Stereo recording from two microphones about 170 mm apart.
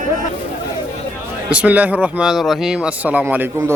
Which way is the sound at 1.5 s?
5° right (ahead or behind).